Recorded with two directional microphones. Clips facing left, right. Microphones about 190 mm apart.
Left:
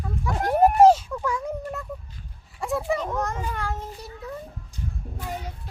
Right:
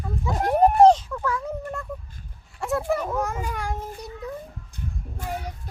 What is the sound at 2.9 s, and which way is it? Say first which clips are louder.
A child's voice: right 1 dB; 5° right (ahead or behind).